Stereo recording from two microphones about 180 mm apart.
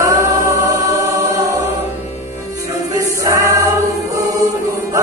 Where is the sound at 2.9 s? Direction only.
15° right (ahead or behind).